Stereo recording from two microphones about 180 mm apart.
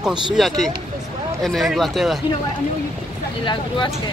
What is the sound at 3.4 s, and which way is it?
Speech, 25° left (ahead or behind).